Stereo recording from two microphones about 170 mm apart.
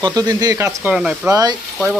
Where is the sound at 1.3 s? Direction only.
25° right (ahead or behind).